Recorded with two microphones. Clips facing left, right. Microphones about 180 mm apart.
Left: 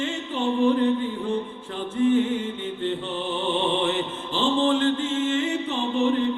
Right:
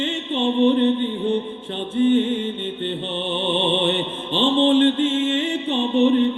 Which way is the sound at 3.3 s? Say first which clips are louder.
Right 3 dB; 30° right (ahead or behind).